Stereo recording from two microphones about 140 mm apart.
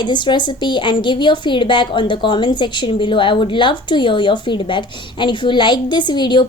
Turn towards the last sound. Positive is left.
turn(degrees=35)  # may be behind; listen again after turning